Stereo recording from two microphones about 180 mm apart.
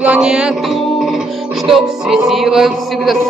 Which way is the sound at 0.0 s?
5° right (ahead or behind).